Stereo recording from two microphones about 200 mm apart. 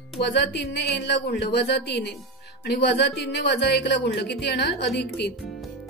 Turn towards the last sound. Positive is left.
turn(degrees=55)  # may be behind; listen again after turning